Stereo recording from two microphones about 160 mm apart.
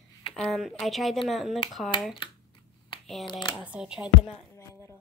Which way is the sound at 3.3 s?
30° left (ahead or behind).